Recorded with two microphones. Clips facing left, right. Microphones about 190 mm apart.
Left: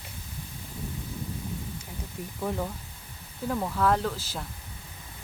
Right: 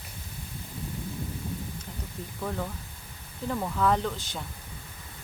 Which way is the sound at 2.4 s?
10° left (ahead or behind).